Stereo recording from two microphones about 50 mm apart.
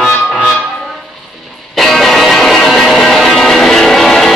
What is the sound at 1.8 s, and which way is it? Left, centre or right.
Music, centre.